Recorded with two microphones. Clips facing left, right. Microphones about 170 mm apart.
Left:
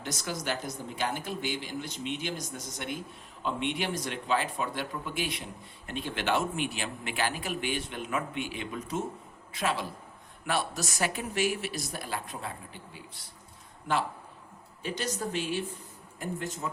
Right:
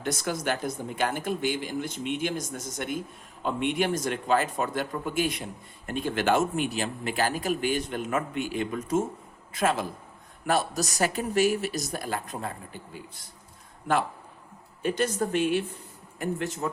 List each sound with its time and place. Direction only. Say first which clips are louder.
0.0 s a man's voice: right 6 dB; 55° right (ahead or behind)
14.8 s speech: right 7 dB; 55° right (ahead or behind)
16.1 s a man's voice: right 5 dB; 75° right (ahead or behind)